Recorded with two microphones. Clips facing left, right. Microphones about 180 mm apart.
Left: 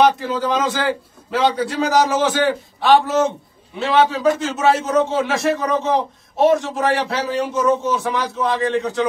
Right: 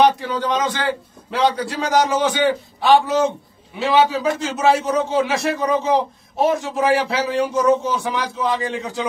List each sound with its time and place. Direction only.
0.0 s a man's voice: centre (ahead or behind)